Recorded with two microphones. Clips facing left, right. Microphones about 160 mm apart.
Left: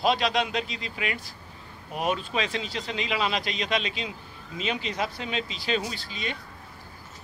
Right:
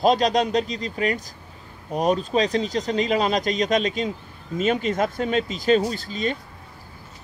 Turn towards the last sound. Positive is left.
turn(degrees=-45)  # may be behind; listen again after turning